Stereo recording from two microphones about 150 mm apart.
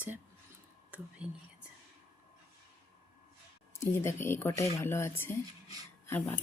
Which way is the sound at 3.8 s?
15° left (ahead or behind).